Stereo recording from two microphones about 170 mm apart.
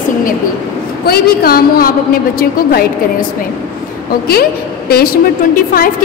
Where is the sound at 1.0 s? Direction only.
65° left (ahead or behind).